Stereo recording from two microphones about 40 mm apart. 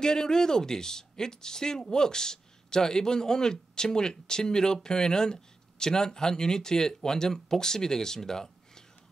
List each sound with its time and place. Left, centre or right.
0.0 s speech: centre